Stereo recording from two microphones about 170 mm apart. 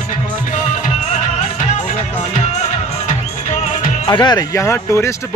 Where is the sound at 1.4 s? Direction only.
40° left (ahead or behind).